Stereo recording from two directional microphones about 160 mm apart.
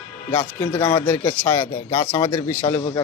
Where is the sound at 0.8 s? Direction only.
25° left (ahead or behind).